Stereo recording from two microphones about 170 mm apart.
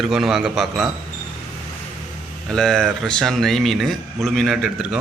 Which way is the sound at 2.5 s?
5° left (ahead or behind).